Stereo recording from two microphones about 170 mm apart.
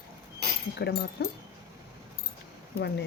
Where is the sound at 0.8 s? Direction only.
75° left (ahead or behind).